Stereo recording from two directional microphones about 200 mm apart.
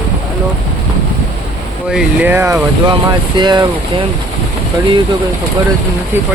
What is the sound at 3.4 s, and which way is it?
Speech, 20° right (ahead or behind).